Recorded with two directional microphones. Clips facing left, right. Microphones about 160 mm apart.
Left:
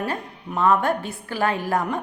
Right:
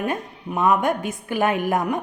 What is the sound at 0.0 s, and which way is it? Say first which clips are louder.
A woman's voice: right 2 dB; 15° right (ahead or behind).